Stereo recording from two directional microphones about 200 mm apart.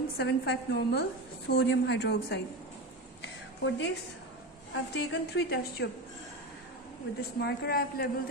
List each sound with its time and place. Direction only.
0.2 s a woman's voice: 55° left (ahead or behind)
3.2 s a sound: 65° left (ahead or behind)
4.9 s a woman's voice: 55° left (ahead or behind)
7.2 s a man's voice: 55° left (ahead or behind)